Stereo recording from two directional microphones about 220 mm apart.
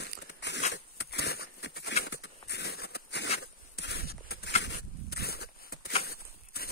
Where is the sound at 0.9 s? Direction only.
45° left (ahead or behind).